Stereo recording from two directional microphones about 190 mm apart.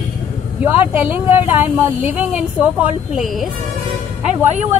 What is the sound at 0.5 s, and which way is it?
Speech, 10° right (ahead or behind).